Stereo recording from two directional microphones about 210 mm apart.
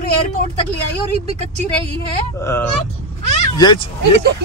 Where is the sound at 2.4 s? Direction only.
10° left (ahead or behind).